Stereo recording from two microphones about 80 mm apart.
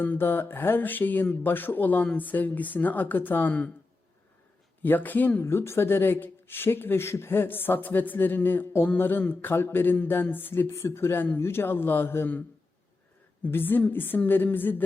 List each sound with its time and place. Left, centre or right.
0.0 s speech: left
4.8 s speech: left
13.4 s speech: left